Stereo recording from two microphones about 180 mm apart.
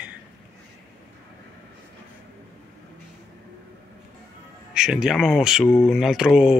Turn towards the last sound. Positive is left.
turn(degrees=-5)  # may be behind; listen again after turning